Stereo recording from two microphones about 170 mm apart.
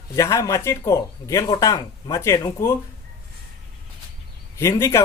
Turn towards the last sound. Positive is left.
turn(degrees=15)  # may be behind; listen again after turning